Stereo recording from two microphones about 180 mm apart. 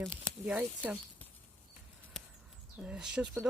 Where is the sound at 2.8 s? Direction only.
5° right (ahead or behind).